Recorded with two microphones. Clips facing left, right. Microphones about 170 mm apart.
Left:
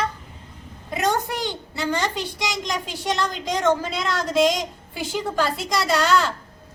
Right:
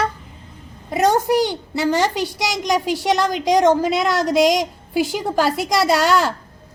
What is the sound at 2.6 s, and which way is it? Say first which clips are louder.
A woman's voice: right 12 dB; 80° right.